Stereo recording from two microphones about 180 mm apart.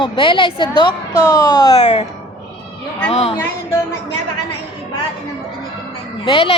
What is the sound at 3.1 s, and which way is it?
Speech, 35° left (ahead or behind).